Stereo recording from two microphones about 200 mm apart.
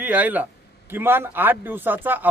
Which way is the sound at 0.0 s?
10° right (ahead or behind).